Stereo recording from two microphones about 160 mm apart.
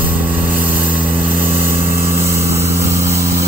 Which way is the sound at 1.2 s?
60° right (ahead or behind).